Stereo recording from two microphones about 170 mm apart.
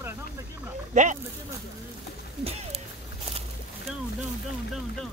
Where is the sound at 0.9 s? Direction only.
45° right (ahead or behind).